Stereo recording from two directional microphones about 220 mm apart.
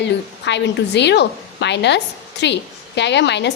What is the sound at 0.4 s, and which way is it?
A woman's voice, 50° left (ahead or behind).